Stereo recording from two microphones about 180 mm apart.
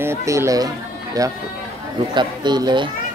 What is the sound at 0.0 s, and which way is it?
Speech, 15° right (ahead or behind).